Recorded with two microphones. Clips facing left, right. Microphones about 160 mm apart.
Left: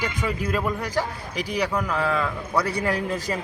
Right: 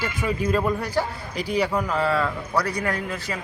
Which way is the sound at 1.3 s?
10° left (ahead or behind).